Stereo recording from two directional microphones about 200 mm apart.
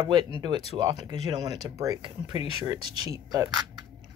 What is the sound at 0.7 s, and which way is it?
Speech, 20° right (ahead or behind).